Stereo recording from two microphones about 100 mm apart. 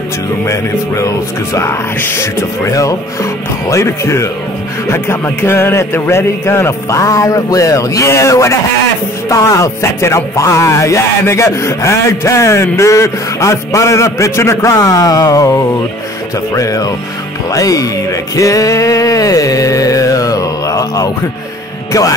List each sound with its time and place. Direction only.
0.5 s speech: 30° left (ahead or behind)